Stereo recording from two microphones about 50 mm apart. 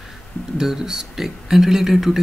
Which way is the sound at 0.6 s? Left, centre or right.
Centre.